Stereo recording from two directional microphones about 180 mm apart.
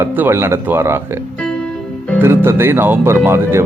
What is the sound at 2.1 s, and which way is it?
Speech, 15° right (ahead or behind).